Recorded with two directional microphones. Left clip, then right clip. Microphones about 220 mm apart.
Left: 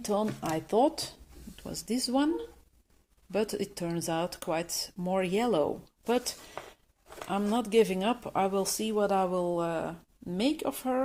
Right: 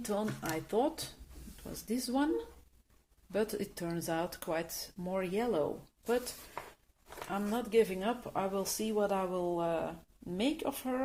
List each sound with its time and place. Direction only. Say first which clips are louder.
0.0 s speech: left 6 dB; 30° left (ahead or behind)
3.3 s speech: left 4 dB; 25° left (ahead or behind)
7.3 s speech: left 6 dB; 40° left (ahead or behind); by 11.0 s 25° left (ahead or behind)